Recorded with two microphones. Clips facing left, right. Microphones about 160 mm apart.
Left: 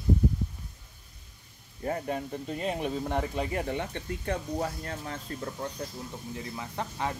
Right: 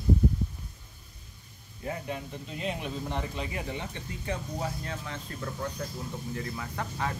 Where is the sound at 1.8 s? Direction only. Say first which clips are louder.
Left 4 dB; 45° left (ahead or behind).